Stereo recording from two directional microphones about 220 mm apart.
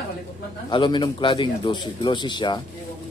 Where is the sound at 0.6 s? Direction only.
20° left (ahead or behind).